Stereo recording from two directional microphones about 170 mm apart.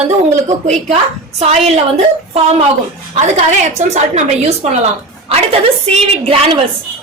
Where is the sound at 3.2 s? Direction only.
45° right (ahead or behind).